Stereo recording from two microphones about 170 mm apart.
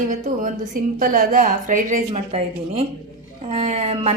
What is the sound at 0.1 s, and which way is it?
A woman's voice, 50° right (ahead or behind).